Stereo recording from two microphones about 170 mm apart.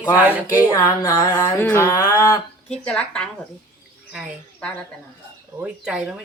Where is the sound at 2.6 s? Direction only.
5° left (ahead or behind).